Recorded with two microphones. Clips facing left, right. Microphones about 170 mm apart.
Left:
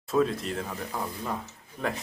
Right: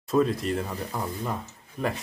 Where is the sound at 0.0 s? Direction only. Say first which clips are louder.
Right 2 dB; centre (ahead or behind).